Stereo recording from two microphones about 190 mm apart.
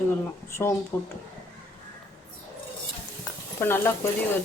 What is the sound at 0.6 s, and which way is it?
Speech, 15° left (ahead or behind).